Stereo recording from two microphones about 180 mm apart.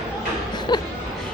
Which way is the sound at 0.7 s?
25° left (ahead or behind).